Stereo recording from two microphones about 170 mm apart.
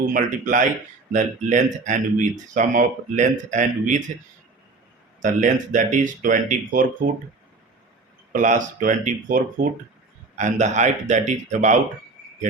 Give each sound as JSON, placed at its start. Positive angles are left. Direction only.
{"t": 0.1, "sound": "speech", "side_deg": -50}
{"t": 5.2, "sound": "speech", "side_deg": -50}
{"t": 8.3, "sound": "speech", "side_deg": -50}